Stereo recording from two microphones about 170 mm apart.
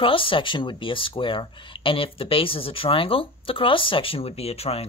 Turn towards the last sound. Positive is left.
turn(degrees=35)  # may be behind; listen again after turning